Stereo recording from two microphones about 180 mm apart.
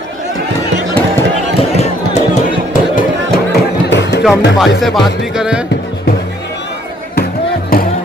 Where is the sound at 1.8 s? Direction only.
40° left (ahead or behind).